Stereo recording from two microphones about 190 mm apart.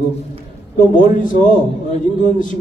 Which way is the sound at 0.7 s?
45° left (ahead or behind).